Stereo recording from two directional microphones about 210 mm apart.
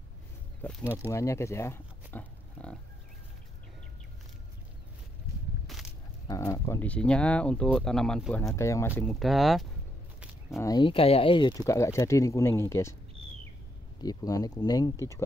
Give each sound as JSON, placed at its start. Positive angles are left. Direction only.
{"t": 0.6, "sound": "speech", "side_deg": 5}
{"t": 5.7, "sound": "a sound", "side_deg": 0}
{"t": 6.2, "sound": "speech", "side_deg": 15}
{"t": 10.6, "sound": "speech", "side_deg": 20}
{"t": 14.0, "sound": "speech", "side_deg": 20}